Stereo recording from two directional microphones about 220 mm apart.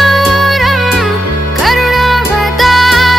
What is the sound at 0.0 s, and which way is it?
Music, centre (ahead or behind).